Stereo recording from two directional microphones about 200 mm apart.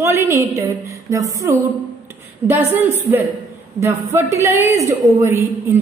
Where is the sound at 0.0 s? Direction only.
15° right (ahead or behind).